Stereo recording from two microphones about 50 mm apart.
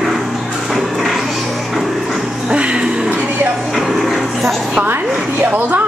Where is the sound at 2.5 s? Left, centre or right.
Centre.